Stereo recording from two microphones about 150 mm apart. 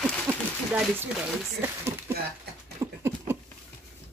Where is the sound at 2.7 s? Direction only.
15° right (ahead or behind).